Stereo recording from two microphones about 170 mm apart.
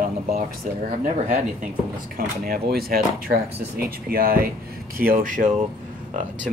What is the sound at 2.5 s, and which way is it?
Speech, 60° right (ahead or behind).